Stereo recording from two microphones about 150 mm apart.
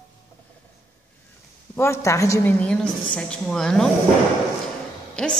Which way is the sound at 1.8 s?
20° left (ahead or behind).